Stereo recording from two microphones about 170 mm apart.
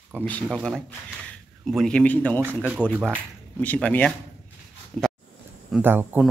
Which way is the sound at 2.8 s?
10° left (ahead or behind).